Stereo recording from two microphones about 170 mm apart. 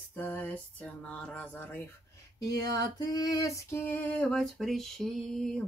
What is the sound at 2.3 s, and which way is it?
Female singing, 20° left (ahead or behind).